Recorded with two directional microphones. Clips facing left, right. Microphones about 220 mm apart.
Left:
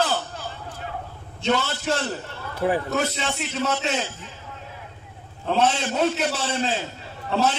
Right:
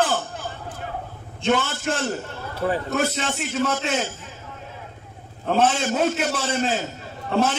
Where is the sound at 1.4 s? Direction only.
50° right (ahead or behind).